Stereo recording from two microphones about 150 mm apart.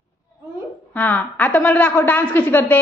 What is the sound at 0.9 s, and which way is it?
A woman's voice, 10° left (ahead or behind).